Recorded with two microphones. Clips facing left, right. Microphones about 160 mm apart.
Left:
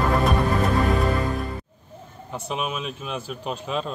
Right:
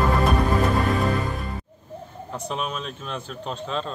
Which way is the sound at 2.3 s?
5° left (ahead or behind).